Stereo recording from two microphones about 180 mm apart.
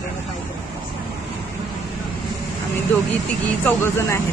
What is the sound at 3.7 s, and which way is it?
Speech, 15° left (ahead or behind).